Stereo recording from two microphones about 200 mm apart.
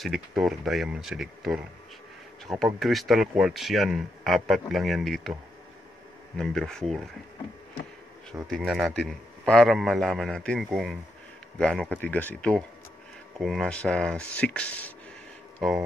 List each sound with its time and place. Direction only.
0.0 s speech: centre (ahead or behind)
6.3 s speech: centre (ahead or behind)
8.5 s speech: centre (ahead or behind)